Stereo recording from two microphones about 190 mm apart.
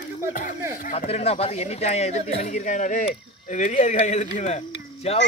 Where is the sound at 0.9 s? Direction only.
30° left (ahead or behind).